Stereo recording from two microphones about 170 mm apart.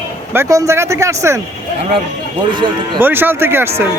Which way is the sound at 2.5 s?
30° right (ahead or behind).